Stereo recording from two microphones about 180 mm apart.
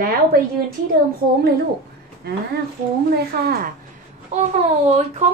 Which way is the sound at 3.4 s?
55° right (ahead or behind).